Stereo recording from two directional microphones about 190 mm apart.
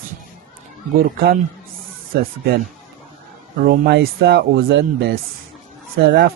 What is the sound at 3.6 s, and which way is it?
Speech, 60° right (ahead or behind).